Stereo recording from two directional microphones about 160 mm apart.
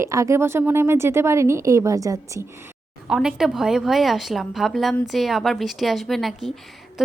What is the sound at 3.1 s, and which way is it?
A woman's voice, 5° right (ahead or behind).